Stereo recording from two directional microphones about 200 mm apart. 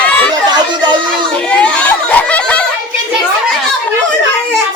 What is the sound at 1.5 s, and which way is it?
Crowd, 5° left (ahead or behind).